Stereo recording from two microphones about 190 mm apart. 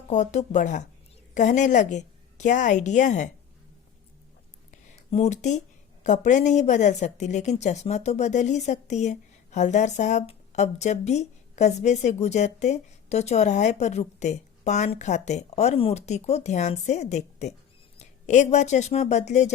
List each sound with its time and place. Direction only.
0.1 s a woman's voice: 40° left (ahead or behind)
4.7 s a sound: 35° left (ahead or behind)
6.0 s a woman's voice: 40° left (ahead or behind)